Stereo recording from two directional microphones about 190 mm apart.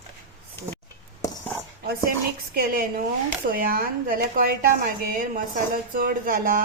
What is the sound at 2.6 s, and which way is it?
A woman's voice, 50° right (ahead or behind).